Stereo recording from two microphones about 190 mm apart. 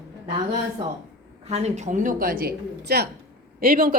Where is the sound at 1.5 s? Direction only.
35° right (ahead or behind).